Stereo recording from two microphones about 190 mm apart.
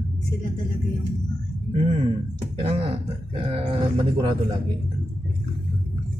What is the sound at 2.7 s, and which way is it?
Speech, 30° right (ahead or behind).